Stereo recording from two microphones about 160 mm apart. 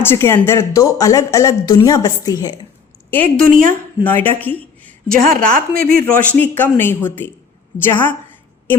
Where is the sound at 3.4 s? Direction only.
60° right (ahead or behind).